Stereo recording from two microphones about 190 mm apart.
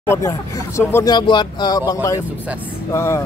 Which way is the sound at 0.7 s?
15° left (ahead or behind).